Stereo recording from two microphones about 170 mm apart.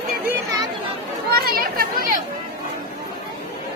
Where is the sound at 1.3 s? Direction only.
60° right (ahead or behind).